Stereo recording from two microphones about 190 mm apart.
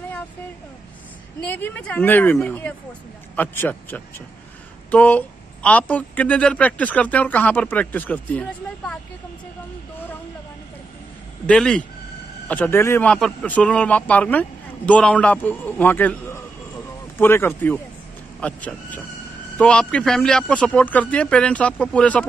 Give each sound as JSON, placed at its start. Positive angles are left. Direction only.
{"t": 1.5, "sound": "speech", "side_deg": 10}
{"t": 11.4, "sound": "a man's voice", "side_deg": 5}